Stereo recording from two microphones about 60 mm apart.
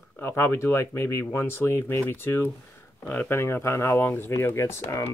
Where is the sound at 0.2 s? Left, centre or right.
Left.